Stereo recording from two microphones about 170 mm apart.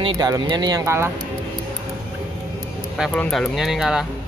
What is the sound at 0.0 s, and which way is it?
Speech, 25° right (ahead or behind).